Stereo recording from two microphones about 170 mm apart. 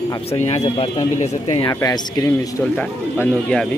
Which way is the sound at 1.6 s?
25° left (ahead or behind).